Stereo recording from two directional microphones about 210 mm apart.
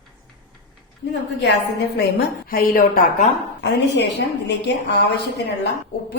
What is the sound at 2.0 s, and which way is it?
A woman's voice, 50° left (ahead or behind).